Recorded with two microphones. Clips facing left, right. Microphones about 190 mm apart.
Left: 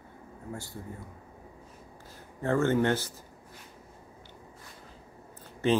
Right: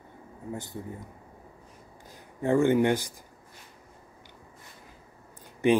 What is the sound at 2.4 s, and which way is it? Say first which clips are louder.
Speech: right 3 dB; 15° right (ahead or behind).